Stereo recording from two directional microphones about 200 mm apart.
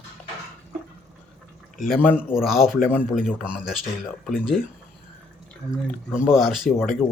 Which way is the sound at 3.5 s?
5° right (ahead or behind).